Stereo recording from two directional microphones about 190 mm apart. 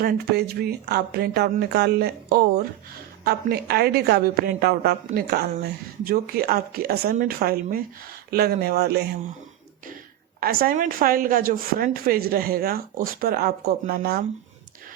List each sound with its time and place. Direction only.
0.0 s a woman's voice: 55° right (ahead or behind)
10.4 s a woman's voice: 50° right (ahead or behind)